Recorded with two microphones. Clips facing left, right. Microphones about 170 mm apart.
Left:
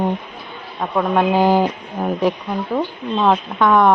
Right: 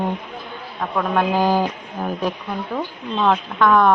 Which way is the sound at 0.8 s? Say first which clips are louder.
Left 3 dB; 15° left (ahead or behind).